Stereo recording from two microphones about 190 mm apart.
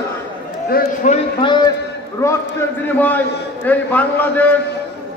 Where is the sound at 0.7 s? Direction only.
50° left (ahead or behind).